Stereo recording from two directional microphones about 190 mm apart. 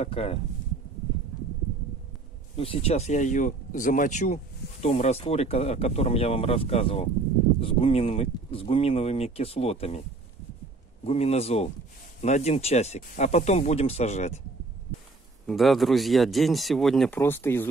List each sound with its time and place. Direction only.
0.0 s speech: 30° left (ahead or behind)
2.5 s speech: 30° left (ahead or behind)
11.1 s speech: 35° left (ahead or behind)
15.4 s speech: centre (ahead or behind)
17.2 s speech: 15° left (ahead or behind)